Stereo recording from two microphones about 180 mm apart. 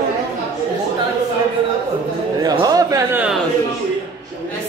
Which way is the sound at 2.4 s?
20° right (ahead or behind).